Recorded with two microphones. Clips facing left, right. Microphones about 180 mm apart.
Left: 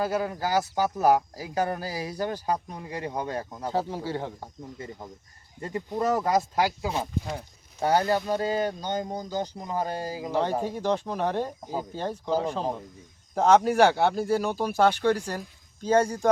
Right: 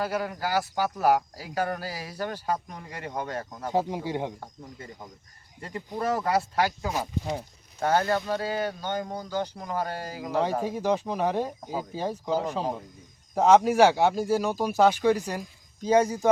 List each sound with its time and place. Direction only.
0.0 s speech: 20° left (ahead or behind)
3.7 s speech: 15° right (ahead or behind)
5.5 s speech: 25° left (ahead or behind)
10.6 s speech: 5° right (ahead or behind)